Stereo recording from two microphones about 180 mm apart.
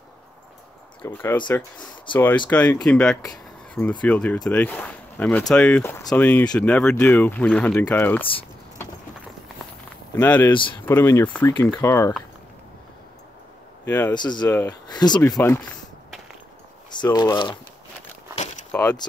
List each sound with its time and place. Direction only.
1.0 s speech: 10° left (ahead or behind)
10.1 s speech: 10° left (ahead or behind)
10.5 s speech: 25° left (ahead or behind)
10.9 s speech: 15° left (ahead or behind)
13.8 s speech: 10° left (ahead or behind)
14.1 s speech: 25° left (ahead or behind)
14.5 s speech: 10° left (ahead or behind)
14.9 s speech: 20° left (ahead or behind)
16.9 s speech: 25° left (ahead or behind)
18.7 s keys jangling: 5° left (ahead or behind)